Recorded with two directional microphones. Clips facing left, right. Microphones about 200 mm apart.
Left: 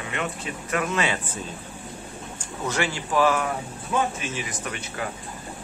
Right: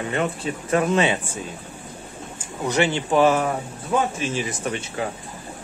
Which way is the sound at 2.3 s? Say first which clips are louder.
Right 6 dB; 15° right (ahead or behind).